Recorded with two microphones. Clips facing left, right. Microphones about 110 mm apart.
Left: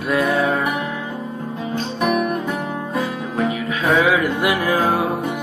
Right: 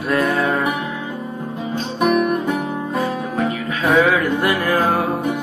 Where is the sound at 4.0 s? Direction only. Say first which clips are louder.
Right 3 dB; 10° left (ahead or behind).